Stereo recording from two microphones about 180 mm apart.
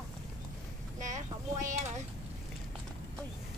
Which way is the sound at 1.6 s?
45° right (ahead or behind).